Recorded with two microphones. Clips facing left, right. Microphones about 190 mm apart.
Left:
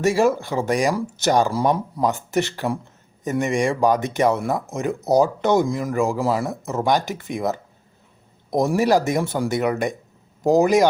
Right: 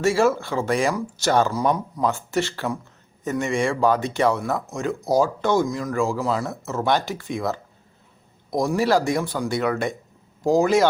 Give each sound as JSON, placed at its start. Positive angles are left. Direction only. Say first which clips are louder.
{"t": 0.0, "sound": "speech", "louder": "left 1 dB", "side_deg": 15}